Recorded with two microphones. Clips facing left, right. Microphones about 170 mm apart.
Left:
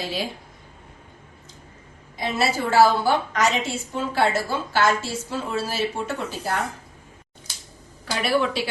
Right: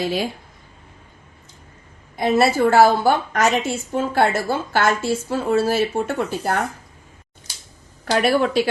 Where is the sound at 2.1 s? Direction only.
50° right (ahead or behind).